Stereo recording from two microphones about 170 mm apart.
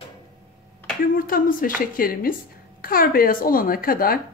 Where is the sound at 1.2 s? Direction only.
55° left (ahead or behind).